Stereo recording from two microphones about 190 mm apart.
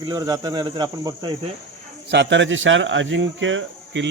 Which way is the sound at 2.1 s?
70° right (ahead or behind).